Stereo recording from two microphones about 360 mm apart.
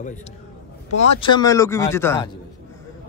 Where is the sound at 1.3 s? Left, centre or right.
Centre.